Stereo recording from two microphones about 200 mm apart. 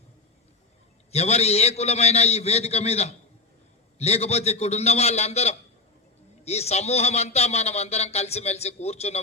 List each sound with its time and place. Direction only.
1.1 s speech: 30° left (ahead or behind)